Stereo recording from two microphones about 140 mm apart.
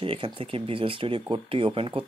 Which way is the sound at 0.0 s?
40° right (ahead or behind).